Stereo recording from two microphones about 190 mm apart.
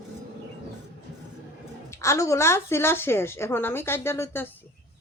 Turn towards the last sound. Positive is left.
turn(degrees=10)  # may be behind; listen again after turning